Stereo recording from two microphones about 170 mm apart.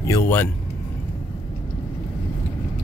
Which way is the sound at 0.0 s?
15° left (ahead or behind).